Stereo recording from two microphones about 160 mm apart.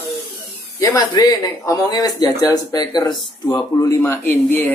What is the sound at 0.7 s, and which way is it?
Speech, 20° left (ahead or behind).